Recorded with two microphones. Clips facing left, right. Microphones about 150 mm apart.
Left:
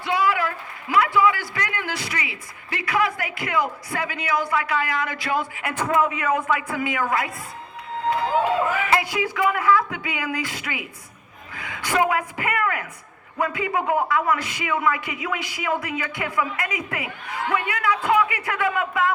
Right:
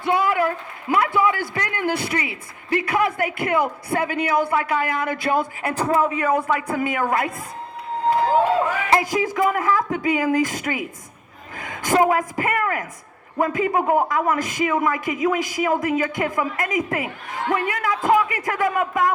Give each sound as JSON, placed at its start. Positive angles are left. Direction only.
{"t": 0.0, "sound": "a man's voice", "side_deg": -50}
{"t": 5.6, "sound": "a man's voice", "side_deg": -35}
{"t": 8.9, "sound": "a man's voice", "side_deg": -40}